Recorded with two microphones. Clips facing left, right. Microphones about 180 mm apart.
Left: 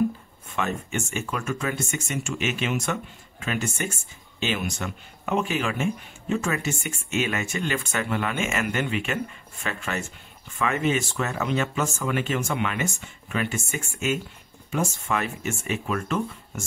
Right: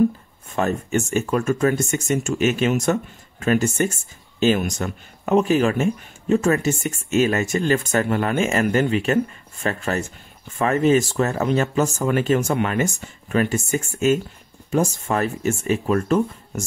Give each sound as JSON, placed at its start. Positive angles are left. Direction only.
{"t": 0.6, "sound": "speech", "side_deg": -40}